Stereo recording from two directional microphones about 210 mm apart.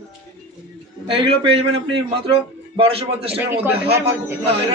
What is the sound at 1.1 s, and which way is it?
Speech, 25° right (ahead or behind).